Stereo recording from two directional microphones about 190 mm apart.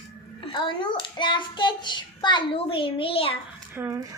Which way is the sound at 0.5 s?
25° left (ahead or behind).